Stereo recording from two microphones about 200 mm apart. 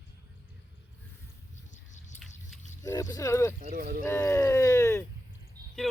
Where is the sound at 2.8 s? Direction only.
15° left (ahead or behind).